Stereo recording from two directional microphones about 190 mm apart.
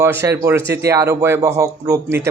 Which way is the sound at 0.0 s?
15° right (ahead or behind).